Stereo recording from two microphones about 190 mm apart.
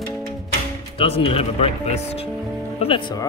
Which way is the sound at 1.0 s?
30° left (ahead or behind).